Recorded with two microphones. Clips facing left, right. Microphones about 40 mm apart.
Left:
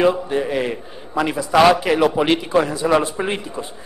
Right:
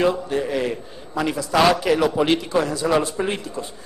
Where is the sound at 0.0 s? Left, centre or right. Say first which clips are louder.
Left 3 dB; centre.